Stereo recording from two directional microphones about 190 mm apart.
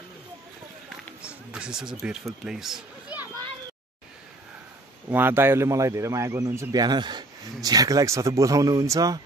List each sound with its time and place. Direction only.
1.5 s speech: 5° right (ahead or behind)
5.1 s a man's voice: 10° right (ahead or behind)